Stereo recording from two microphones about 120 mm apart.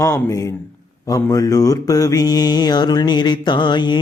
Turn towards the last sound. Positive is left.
turn(degrees=40)  # may be behind; listen again after turning